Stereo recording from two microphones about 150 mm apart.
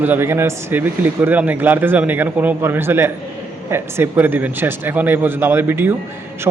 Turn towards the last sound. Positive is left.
turn(degrees=-15)  # may be behind; listen again after turning